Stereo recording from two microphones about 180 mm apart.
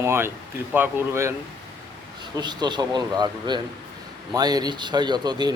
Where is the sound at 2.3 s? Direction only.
25° right (ahead or behind).